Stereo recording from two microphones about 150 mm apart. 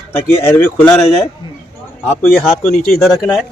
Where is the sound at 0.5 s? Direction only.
10° left (ahead or behind).